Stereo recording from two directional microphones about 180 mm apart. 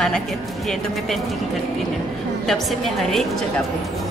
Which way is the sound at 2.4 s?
Centre (ahead or behind).